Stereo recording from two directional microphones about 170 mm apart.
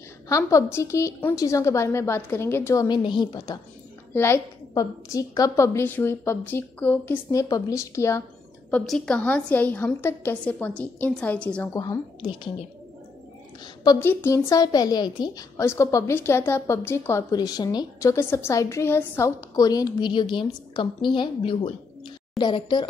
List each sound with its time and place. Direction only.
0.3 s a woman's voice: 20° left (ahead or behind)
4.1 s a woman's voice: 15° left (ahead or behind)
8.6 s a woman's voice: 5° left (ahead or behind)
11.7 s a woman's voice: 20° left (ahead or behind)
13.8 s a woman's voice: 15° left (ahead or behind)